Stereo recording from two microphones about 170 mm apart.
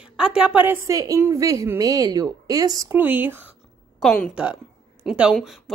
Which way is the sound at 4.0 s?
Centre (ahead or behind).